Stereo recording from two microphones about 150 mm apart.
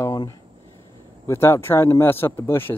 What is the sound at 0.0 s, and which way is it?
Speech, 25° left (ahead or behind).